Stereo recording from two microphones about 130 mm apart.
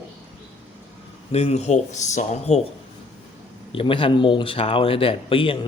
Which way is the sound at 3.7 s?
45° left (ahead or behind).